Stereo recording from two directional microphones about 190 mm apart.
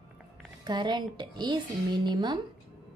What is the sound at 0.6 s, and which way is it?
A woman's voice, 20° right (ahead or behind).